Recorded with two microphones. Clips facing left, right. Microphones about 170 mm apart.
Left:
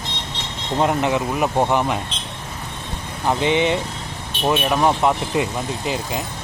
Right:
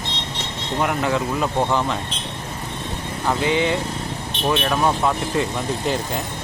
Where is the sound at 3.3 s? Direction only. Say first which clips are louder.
Left 2 dB; 20° left (ahead or behind).